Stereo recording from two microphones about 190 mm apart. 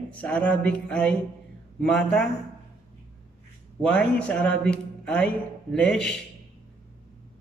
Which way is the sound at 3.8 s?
5° left (ahead or behind).